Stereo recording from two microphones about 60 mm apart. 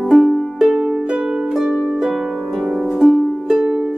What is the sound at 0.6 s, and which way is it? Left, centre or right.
Music, centre.